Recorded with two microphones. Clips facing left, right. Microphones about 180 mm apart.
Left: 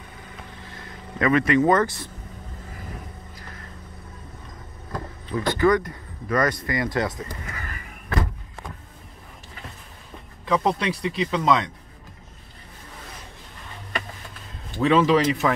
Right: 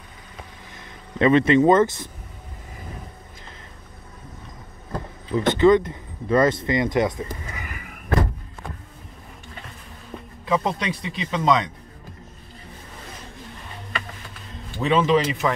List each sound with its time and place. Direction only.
0.7 s speech: 25° right (ahead or behind)
5.3 s speech: 25° right (ahead or behind)
10.4 s speech: centre (ahead or behind)
14.8 s speech: centre (ahead or behind)